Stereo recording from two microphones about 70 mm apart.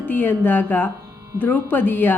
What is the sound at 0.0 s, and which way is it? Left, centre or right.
Music, left.